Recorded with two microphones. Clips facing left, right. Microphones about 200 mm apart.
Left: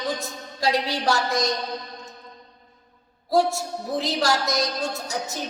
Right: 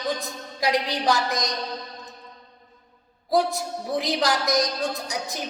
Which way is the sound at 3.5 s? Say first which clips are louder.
Even; 15° right (ahead or behind).